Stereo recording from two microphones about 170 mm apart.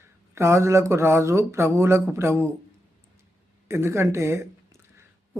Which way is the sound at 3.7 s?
15° right (ahead or behind).